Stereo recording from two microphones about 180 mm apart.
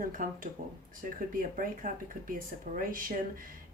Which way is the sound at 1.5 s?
50° right (ahead or behind).